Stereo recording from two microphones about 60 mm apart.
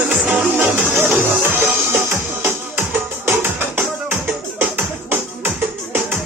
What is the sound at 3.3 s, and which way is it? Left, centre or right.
Music, right.